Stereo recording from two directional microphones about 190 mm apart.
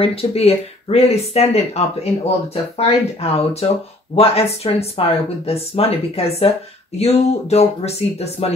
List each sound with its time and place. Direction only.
0.0 s speech: 30° left (ahead or behind)